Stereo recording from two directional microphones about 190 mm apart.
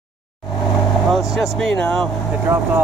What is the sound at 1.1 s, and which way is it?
Vehicle, centre (ahead or behind).